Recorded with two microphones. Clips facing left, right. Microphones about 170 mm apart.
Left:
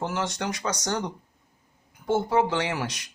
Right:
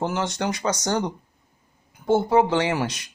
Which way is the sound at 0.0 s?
30° right (ahead or behind).